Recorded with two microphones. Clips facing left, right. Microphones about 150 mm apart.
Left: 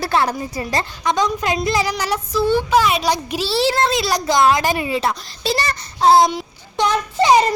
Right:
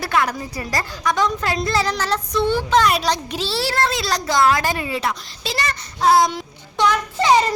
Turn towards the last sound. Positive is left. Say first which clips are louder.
# left 2 dB
turn(degrees=20)  # may be behind; listen again after turning